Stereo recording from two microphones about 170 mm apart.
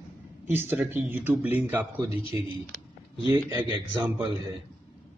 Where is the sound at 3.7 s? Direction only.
25° right (ahead or behind).